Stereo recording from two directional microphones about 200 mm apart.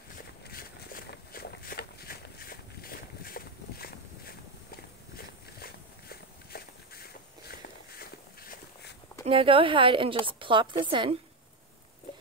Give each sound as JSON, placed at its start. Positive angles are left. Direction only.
{"t": 0.5, "sound": "walk", "side_deg": 50}
{"t": 5.1, "sound": "walk", "side_deg": 50}
{"t": 9.2, "sound": "a woman's voice", "side_deg": -25}